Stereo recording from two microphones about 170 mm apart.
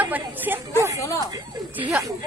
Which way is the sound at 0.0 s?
10° right (ahead or behind).